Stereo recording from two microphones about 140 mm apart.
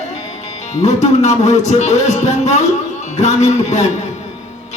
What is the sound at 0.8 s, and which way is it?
A man's voice, 55° left (ahead or behind).